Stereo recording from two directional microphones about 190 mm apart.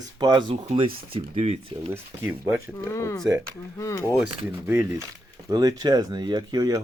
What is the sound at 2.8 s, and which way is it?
Speech, 15° left (ahead or behind).